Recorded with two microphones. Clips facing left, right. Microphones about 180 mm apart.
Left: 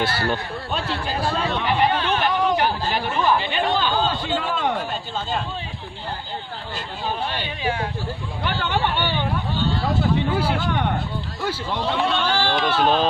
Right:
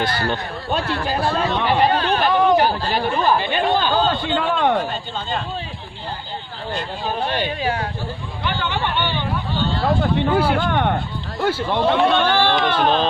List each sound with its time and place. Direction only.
0.7 s chatter: 55° right (ahead or behind)
1.6 s a sound: 35° right (ahead or behind)
2.3 s a sound: 55° right (ahead or behind)
2.6 s chatter: 35° right (ahead or behind)
3.5 s a sound: 50° right (ahead or behind)
4.4 s a man's voice: 60° right (ahead or behind)
7.3 s speech: 45° right (ahead or behind)
8.4 s speech: 45° left (ahead or behind)
9.6 s speech: 60° right (ahead or behind)